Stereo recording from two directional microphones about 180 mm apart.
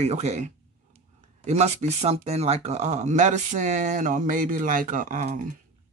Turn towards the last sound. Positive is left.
turn(degrees=-45)  # may be behind; listen again after turning